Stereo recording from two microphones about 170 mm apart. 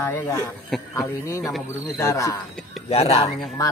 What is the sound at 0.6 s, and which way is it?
Speech, centre (ahead or behind).